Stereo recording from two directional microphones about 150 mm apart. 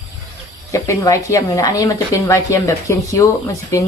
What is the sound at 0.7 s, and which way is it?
A woman's voice, 20° left (ahead or behind).